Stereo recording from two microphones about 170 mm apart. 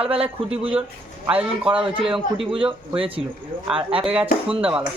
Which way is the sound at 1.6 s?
30° right (ahead or behind).